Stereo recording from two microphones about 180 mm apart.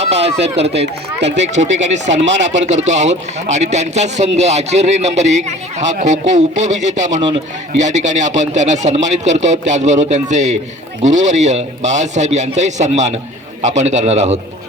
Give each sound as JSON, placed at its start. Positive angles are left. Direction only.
{"t": 0.0, "sound": "speech", "side_deg": -35}
{"t": 1.2, "sound": "speech", "side_deg": -75}
{"t": 1.5, "sound": "a man's voice", "side_deg": -40}
{"t": 2.2, "sound": "speech", "side_deg": -80}
{"t": 2.5, "sound": "a man's voice", "side_deg": -40}
{"t": 7.2, "sound": "speech", "side_deg": -30}
{"t": 7.8, "sound": "a man's voice", "side_deg": -40}